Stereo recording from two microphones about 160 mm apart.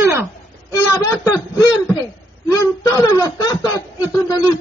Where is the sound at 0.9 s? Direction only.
20° left (ahead or behind).